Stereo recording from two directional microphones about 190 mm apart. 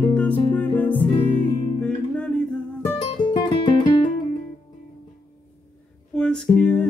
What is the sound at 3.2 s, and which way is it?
Music, 25° left (ahead or behind).